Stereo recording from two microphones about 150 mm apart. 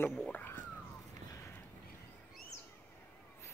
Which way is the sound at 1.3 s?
15° left (ahead or behind).